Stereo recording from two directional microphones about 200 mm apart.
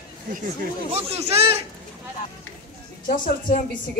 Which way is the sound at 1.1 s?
30° right (ahead or behind).